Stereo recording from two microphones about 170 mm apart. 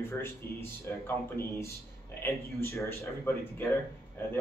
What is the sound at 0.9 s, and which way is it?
Speech, 10° left (ahead or behind).